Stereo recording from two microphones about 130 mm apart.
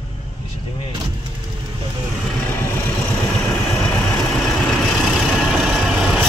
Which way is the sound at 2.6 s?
15° left (ahead or behind).